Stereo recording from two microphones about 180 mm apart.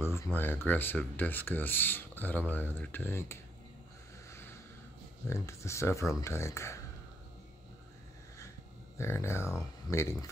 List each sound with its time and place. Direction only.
0.0 s speech: 15° left (ahead or behind)
4.3 s a sound: 15° left (ahead or behind)
5.3 s speech: 15° left (ahead or behind)
8.9 s speech: 15° left (ahead or behind)